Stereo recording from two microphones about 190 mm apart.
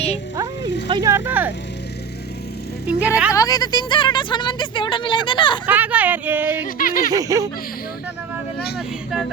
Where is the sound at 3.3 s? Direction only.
20° left (ahead or behind).